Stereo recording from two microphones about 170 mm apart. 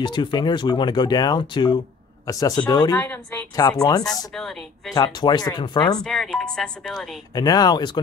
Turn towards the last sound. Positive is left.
turn(degrees=25)  # may be behind; listen again after turning